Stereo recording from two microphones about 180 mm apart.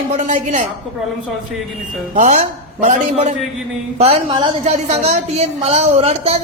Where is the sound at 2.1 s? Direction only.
40° right (ahead or behind).